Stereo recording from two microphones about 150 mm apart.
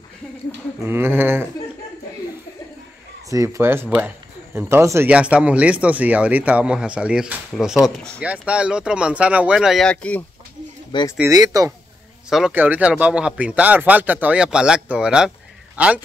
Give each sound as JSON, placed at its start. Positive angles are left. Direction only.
{"t": 0.8, "sound": "speech", "side_deg": -15}
{"t": 3.3, "sound": "speech", "side_deg": -20}
{"t": 8.2, "sound": "speech", "side_deg": -10}
{"t": 10.9, "sound": "speech", "side_deg": 30}
{"t": 11.2, "sound": "speech", "side_deg": -25}
{"t": 12.3, "sound": "speech", "side_deg": 0}